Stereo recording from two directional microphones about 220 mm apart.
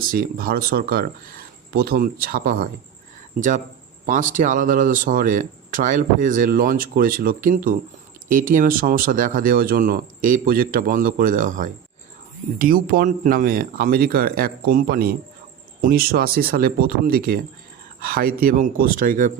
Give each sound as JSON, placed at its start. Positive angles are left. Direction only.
{"t": 0.1, "sound": "speech", "side_deg": -40}